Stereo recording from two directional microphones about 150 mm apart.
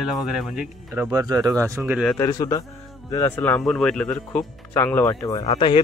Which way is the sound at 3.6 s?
5° left (ahead or behind).